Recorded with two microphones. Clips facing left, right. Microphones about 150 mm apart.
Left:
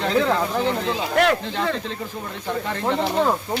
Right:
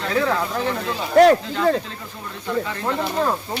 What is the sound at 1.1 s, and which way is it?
Speech, 35° right (ahead or behind).